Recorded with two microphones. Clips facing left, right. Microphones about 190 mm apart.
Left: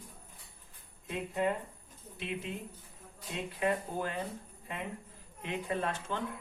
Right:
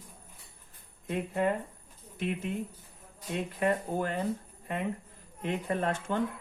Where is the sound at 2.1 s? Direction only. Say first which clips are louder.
Right 6 dB; 50° right (ahead or behind).